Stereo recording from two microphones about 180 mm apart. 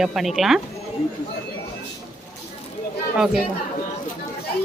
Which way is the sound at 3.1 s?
5° right (ahead or behind).